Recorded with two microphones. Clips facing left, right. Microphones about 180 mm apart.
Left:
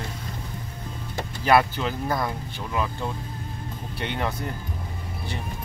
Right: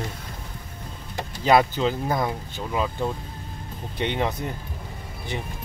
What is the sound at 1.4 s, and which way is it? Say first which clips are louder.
Speech: right 2 dB; 20° right (ahead or behind).